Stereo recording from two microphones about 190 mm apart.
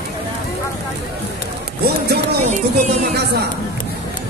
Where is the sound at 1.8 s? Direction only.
55° right (ahead or behind).